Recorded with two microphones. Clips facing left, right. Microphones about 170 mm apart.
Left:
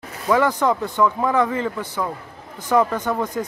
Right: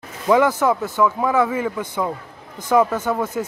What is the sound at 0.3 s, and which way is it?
Speech, 10° right (ahead or behind).